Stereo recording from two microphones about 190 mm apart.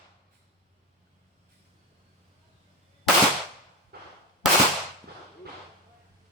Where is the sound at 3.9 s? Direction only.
55° right (ahead or behind).